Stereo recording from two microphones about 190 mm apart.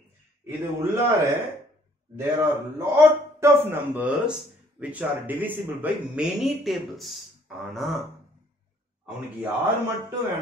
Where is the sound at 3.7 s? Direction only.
10° right (ahead or behind).